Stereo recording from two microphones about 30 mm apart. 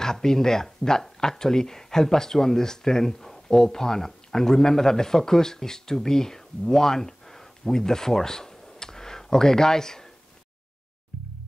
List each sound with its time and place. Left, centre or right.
0.0 s speech: centre